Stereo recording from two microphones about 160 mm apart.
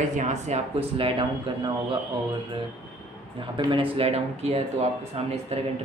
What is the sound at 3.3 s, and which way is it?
Speech, 30° right (ahead or behind).